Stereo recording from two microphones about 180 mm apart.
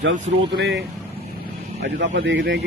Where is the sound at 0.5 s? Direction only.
70° right (ahead or behind).